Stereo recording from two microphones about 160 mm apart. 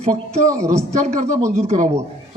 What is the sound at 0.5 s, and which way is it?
Speech, 20° right (ahead or behind).